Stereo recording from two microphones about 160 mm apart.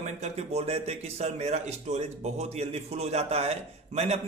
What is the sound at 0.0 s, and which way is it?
A man's voice, 40° right (ahead or behind).